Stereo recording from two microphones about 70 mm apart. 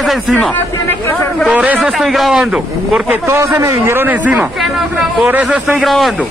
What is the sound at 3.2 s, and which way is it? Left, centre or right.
Speech, right.